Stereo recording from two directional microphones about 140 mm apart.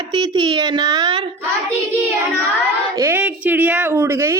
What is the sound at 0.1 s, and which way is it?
Speech, 35° right (ahead or behind).